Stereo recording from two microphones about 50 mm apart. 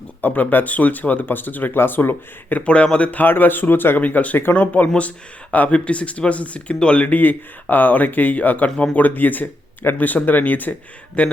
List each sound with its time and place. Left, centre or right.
0.2 s speech: left
2.6 s speech: left
3.2 s speech: left
7.1 s speech: left